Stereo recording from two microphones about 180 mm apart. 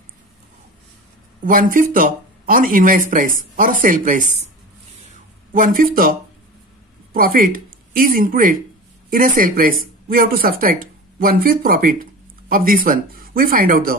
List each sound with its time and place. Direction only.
1.4 s speech: 50° right (ahead or behind)
5.5 s speech: 50° right (ahead or behind)